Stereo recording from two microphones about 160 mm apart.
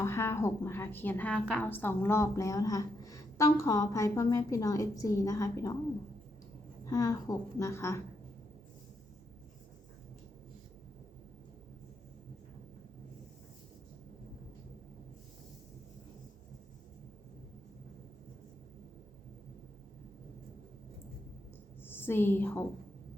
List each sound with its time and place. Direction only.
0.0 s a woman's voice: 15° left (ahead or behind)
6.8 s a woman's voice: 20° left (ahead or behind)
21.8 s a woman's voice: 15° left (ahead or behind)